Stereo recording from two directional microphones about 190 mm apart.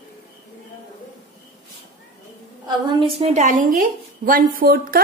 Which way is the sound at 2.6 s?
25° right (ahead or behind).